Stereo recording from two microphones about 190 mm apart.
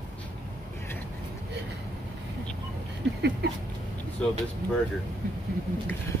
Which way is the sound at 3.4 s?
55° right (ahead or behind).